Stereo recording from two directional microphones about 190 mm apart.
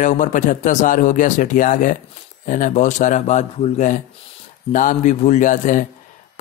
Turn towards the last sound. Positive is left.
turn(degrees=40)  # may be behind; listen again after turning